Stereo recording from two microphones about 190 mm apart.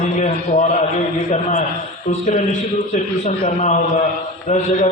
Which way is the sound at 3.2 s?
40° left (ahead or behind).